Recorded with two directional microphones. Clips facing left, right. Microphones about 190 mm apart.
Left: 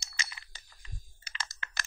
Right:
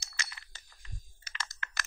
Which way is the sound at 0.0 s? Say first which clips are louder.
Left 1 dB; 20° left (ahead or behind).